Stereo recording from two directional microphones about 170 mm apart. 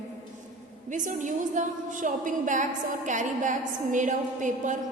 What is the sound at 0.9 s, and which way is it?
A woman's voice, 50° right (ahead or behind).